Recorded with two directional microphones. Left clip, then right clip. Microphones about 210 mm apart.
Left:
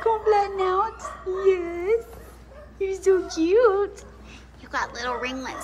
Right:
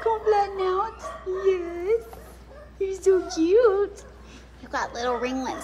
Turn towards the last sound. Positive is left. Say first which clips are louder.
# right 1 dB
turn(degrees=-20)  # may be behind; listen again after turning